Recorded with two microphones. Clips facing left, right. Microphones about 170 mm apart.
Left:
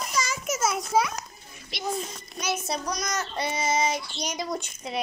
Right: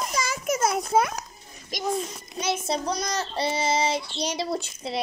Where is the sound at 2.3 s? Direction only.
25° right (ahead or behind).